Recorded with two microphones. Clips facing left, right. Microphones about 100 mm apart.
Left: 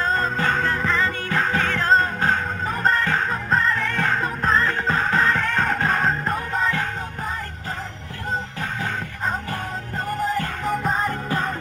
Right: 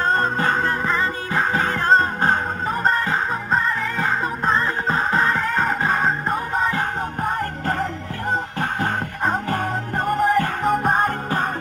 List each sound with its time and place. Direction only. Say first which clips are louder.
0.0 s music: right 2 dB; 40° right (ahead or behind)
3.5 s music: left 1 dB; 5° right (ahead or behind)
4.6 s music: even; 30° right (ahead or behind)
5.3 s music: right 1 dB; 10° right (ahead or behind)
8.5 s music: right 5 dB; 50° right (ahead or behind)